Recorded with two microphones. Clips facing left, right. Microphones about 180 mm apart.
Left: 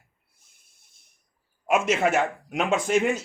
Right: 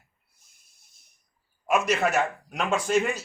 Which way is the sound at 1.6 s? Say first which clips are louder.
Left 2 dB; 20° left (ahead or behind).